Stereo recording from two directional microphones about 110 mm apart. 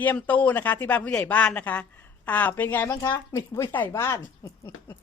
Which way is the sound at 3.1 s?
30° left (ahead or behind).